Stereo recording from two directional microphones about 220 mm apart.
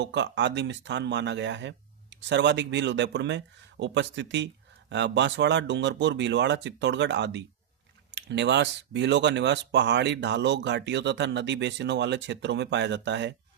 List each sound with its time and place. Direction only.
0.0 s speech: 55° right (ahead or behind)